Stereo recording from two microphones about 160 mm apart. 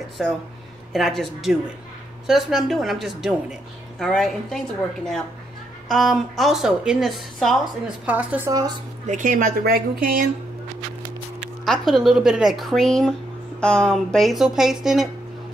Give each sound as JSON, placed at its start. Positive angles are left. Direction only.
{"t": 0.2, "sound": "a woman's voice", "side_deg": 0}
{"t": 5.9, "sound": "a woman's voice", "side_deg": 0}
{"t": 8.1, "sound": "speech", "side_deg": -10}
{"t": 8.5, "sound": "a woman's voice", "side_deg": -25}
{"t": 9.0, "sound": "speech", "side_deg": -50}
{"t": 11.6, "sound": "a woman's voice", "side_deg": 0}